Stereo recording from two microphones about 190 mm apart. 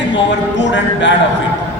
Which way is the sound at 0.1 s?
70° left (ahead or behind).